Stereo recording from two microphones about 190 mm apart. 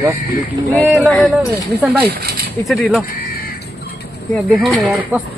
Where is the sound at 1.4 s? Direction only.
20° left (ahead or behind).